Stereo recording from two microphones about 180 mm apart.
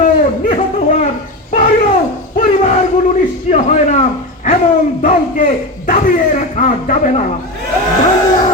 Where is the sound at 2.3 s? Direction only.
45° left (ahead or behind).